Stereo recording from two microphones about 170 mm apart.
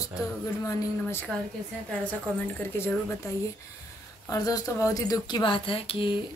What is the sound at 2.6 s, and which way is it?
Speech, 15° left (ahead or behind).